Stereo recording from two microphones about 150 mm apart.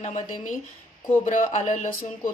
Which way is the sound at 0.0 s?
55° left (ahead or behind).